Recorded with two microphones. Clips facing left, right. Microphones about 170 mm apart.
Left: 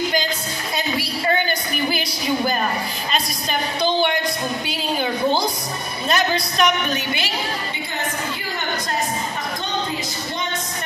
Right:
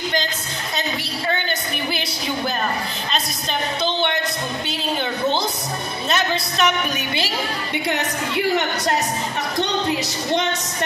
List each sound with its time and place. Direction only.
0.7 s a sound: 5° left (ahead or behind)
1.9 s speech: 5° left (ahead or behind)
3.8 s a woman's voice: 5° left (ahead or behind)
6.0 s a woman's voice: centre (ahead or behind)
7.9 s a woman's voice: 70° right (ahead or behind)